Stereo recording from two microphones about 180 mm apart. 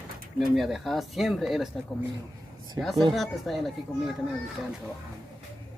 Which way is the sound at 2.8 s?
Centre (ahead or behind).